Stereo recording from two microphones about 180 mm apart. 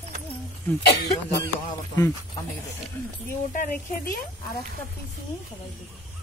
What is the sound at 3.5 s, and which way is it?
Speech, 50° left (ahead or behind).